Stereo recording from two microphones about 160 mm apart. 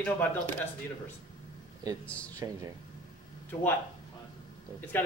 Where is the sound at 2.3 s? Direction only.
20° right (ahead or behind).